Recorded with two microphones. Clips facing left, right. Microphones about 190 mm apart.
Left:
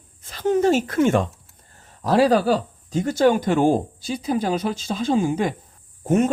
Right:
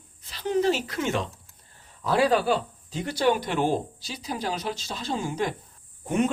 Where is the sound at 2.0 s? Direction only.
40° left (ahead or behind).